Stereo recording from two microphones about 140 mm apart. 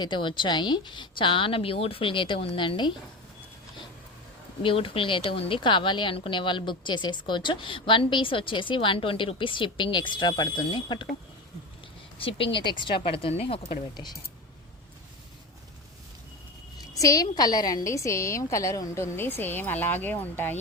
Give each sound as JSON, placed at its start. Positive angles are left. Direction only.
{"t": 0.0, "sound": "a woman's voice", "side_deg": 35}
{"t": 4.6, "sound": "a woman's voice", "side_deg": 40}
{"t": 12.2, "sound": "a woman's voice", "side_deg": 35}
{"t": 16.9, "sound": "a woman's voice", "side_deg": 25}